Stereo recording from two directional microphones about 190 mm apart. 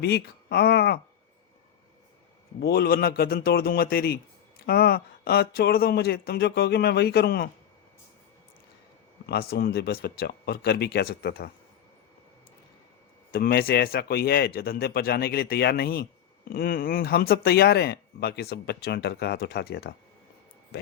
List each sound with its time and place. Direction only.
0.0 s speech: 55° left (ahead or behind)
2.6 s speech: 55° left (ahead or behind)
9.2 s speech: 55° left (ahead or behind)
13.3 s speech: 55° left (ahead or behind)